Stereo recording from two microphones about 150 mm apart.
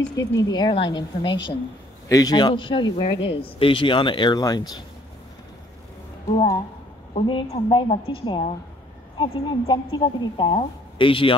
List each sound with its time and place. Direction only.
0.1 s a woman's voice: 25° left (ahead or behind)
7.2 s speech: 35° left (ahead or behind)